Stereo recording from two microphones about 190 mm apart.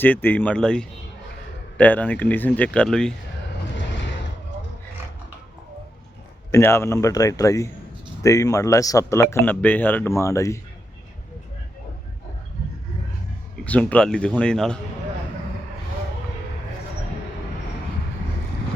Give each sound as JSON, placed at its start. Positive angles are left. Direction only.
{"t": 0.0, "sound": "speech", "side_deg": 10}
{"t": 3.8, "sound": "a sound", "side_deg": 70}
{"t": 6.5, "sound": "speech", "side_deg": 15}
{"t": 13.7, "sound": "a man's voice", "side_deg": 5}